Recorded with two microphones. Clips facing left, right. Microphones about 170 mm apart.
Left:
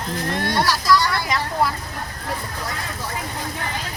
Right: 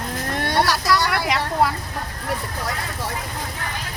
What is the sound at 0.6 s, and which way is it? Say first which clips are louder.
Speech: left 1 dB; 70° right (ahead or behind).